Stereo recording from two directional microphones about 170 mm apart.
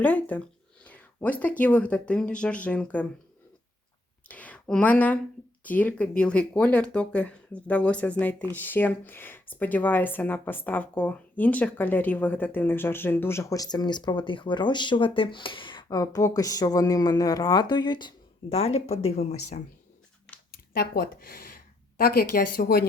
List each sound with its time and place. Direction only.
0.0 s speech: 10° left (ahead or behind)
4.3 s speech: 10° left (ahead or behind); by 18.1 s 25° left (ahead or behind)
18.4 s speech: 40° left (ahead or behind)
20.5 s speech: 60° left (ahead or behind)